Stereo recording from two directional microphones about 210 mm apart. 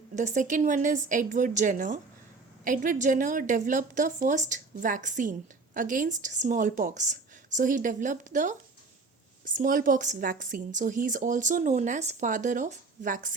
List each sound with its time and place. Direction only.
0.2 s a woman's voice: 35° right (ahead or behind)